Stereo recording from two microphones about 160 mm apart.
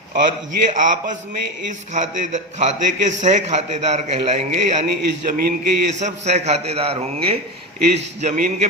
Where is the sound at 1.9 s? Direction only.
50° right (ahead or behind).